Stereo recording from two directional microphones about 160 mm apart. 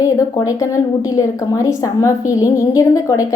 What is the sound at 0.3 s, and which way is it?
A woman's voice, 20° left (ahead or behind).